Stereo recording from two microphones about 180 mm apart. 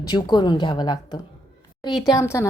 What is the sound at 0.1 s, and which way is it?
Speech, 25° left (ahead or behind).